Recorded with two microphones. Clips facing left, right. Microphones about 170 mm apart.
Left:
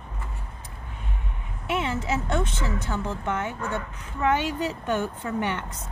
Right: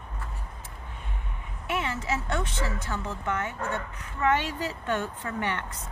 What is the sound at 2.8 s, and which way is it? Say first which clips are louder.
Speech: left 3 dB; 25° left (ahead or behind).